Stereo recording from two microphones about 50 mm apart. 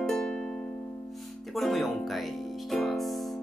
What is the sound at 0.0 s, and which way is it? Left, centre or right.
Music, centre.